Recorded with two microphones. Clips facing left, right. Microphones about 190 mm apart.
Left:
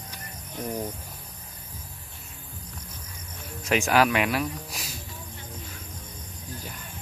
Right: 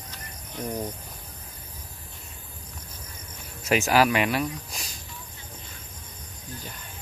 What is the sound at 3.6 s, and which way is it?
Speech, 5° right (ahead or behind).